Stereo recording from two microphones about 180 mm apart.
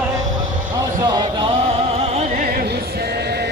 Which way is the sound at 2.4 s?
55° right (ahead or behind).